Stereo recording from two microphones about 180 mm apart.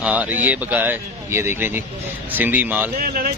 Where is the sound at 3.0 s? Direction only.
55° right (ahead or behind).